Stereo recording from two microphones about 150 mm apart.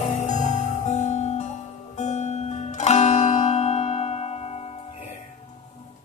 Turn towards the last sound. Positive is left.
turn(degrees=45)  # may be behind; listen again after turning